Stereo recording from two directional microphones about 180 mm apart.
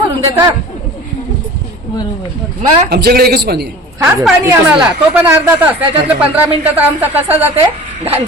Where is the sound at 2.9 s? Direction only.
60° right (ahead or behind).